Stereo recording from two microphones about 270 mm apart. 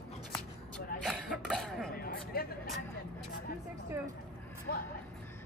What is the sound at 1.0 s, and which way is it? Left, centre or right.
Throat clearing, centre.